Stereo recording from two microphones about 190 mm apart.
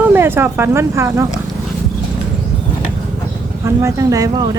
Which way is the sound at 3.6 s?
15° right (ahead or behind).